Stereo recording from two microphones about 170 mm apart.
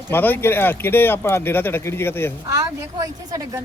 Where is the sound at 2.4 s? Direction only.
20° right (ahead or behind).